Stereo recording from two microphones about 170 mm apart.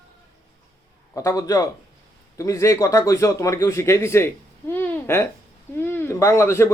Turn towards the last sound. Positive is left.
turn(degrees=15)  # may be behind; listen again after turning